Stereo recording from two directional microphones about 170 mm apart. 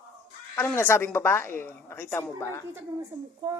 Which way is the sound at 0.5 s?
15° left (ahead or behind).